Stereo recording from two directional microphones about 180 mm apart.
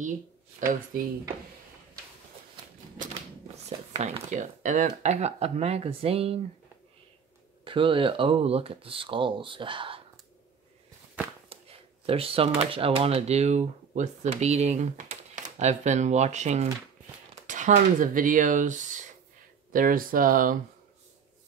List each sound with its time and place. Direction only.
3.6 s speech: 35° right (ahead or behind)
7.6 s speech: 30° right (ahead or behind)
12.1 s speech: 30° right (ahead or behind); by 20.5 s 50° right (ahead or behind)